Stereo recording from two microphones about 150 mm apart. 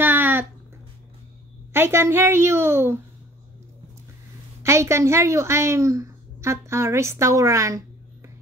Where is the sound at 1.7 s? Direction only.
15° right (ahead or behind).